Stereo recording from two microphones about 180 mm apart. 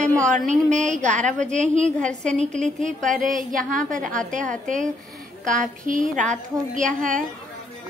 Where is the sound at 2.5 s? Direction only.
45° right (ahead or behind).